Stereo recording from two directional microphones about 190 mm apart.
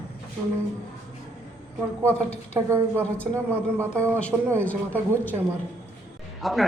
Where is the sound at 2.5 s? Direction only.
15° right (ahead or behind).